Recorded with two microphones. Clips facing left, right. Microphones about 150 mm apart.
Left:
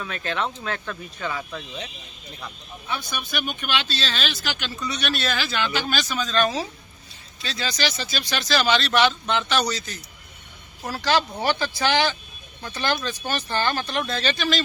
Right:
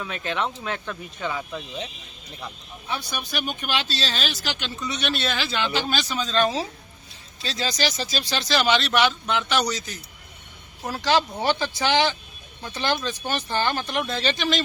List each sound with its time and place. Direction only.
0.0 s speech: 15° right (ahead or behind)
2.4 s speech: 30° right (ahead or behind)
7.4 s speech: 35° right (ahead or behind); by 14.6 s 20° right (ahead or behind)